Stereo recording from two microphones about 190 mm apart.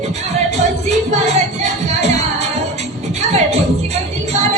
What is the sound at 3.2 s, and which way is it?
Music, 35° right (ahead or behind).